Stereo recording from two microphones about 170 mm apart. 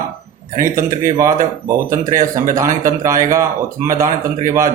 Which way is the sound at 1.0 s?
15° right (ahead or behind).